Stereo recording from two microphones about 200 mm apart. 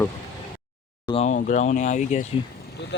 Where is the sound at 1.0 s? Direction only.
30° left (ahead or behind).